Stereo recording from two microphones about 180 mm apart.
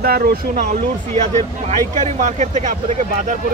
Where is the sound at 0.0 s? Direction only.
55° right (ahead or behind).